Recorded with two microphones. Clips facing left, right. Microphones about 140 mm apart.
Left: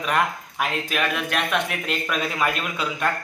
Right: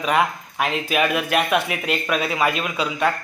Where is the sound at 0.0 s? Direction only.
Centre (ahead or behind).